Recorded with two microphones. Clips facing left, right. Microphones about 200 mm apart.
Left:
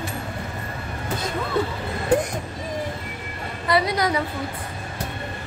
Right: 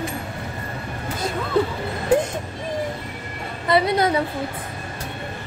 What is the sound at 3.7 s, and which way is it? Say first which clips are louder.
Speech: right 3 dB; 25° right (ahead or behind).